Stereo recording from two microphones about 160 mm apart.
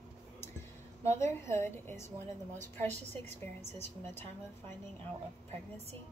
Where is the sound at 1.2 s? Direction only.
15° left (ahead or behind).